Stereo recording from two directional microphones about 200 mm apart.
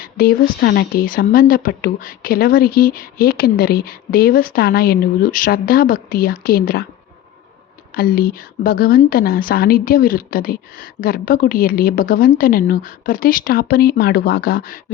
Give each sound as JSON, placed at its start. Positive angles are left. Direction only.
{"t": 0.0, "sound": "a woman's voice", "side_deg": 50}
{"t": 7.9, "sound": "a woman's voice", "side_deg": 45}